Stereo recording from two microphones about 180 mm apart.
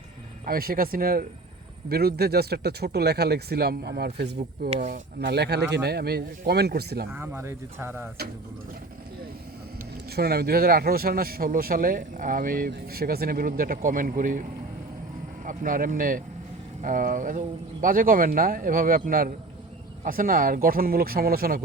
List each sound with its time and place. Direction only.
0.4 s speech: 55° right (ahead or behind)
4.7 s speech: 40° right (ahead or behind)
5.2 s speech: 65° right (ahead or behind)
7.1 s speech: 15° right (ahead or behind)
9.7 s speech: 60° right (ahead or behind)
15.4 s speech: 50° right (ahead or behind)